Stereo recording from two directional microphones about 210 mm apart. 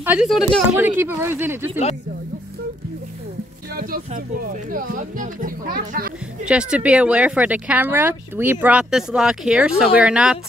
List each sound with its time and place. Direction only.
0.0 s speech: 5° right (ahead or behind)
0.7 s speech: 10° right (ahead or behind)
3.7 s music: 45° right (ahead or behind)
4.7 s speech: 40° right (ahead or behind)
6.4 s speech: 5° right (ahead or behind)